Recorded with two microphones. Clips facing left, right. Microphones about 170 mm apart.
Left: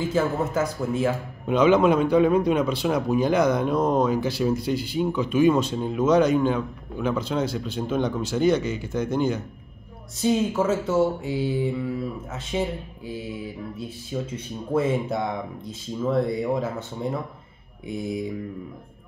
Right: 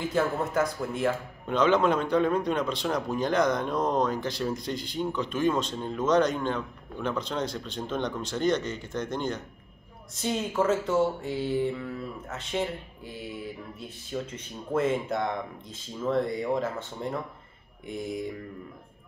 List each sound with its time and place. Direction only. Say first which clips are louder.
0.0 s a man's voice: left 3 dB; 5° left (ahead or behind)
14.1 s a man's voice: left 4 dB; 10° left (ahead or behind)